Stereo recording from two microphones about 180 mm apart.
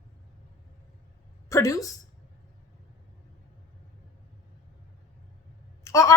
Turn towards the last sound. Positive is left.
turn(degrees=15)  # may be behind; listen again after turning